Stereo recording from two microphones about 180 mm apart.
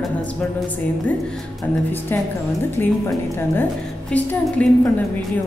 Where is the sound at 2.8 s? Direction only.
10° left (ahead or behind).